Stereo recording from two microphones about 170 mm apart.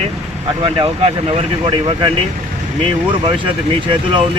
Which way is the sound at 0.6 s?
30° right (ahead or behind).